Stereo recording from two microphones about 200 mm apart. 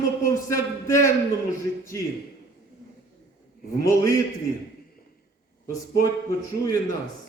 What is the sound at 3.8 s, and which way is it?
Speech, 15° left (ahead or behind).